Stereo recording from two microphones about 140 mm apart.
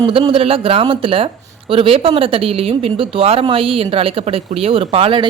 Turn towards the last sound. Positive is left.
turn(degrees=-40)  # may be behind; listen again after turning